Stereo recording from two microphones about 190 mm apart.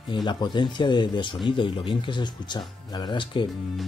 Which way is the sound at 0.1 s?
25° left (ahead or behind).